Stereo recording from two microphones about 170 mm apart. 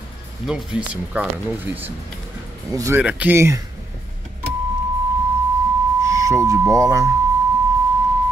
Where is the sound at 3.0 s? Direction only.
10° right (ahead or behind).